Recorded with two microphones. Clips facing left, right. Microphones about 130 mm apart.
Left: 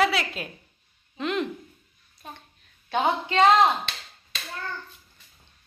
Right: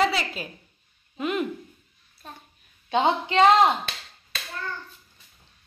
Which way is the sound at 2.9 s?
20° right (ahead or behind).